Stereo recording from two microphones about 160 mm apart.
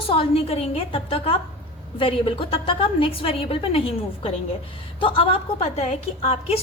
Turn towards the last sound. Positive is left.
turn(degrees=40)  # may be behind; listen again after turning